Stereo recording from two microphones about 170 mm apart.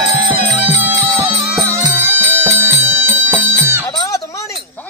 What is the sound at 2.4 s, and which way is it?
Music, 15° right (ahead or behind).